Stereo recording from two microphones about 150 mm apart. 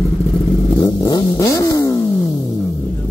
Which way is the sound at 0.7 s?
20° left (ahead or behind).